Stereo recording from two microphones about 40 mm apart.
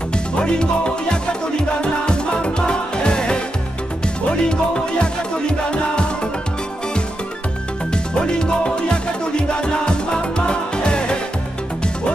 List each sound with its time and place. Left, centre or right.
0.4 s music: left
7.9 s music: left